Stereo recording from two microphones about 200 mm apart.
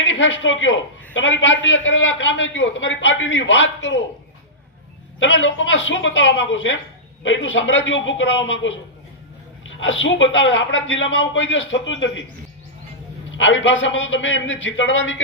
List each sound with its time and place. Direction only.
0.0 s a man's voice: 70° left (ahead or behind)
5.2 s a man's voice: 70° left (ahead or behind)
13.3 s a man's voice: 70° left (ahead or behind)